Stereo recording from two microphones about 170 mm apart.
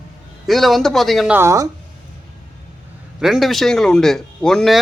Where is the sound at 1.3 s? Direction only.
15° right (ahead or behind).